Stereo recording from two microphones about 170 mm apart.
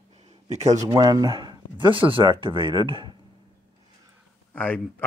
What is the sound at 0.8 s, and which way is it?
Speech, 25° right (ahead or behind).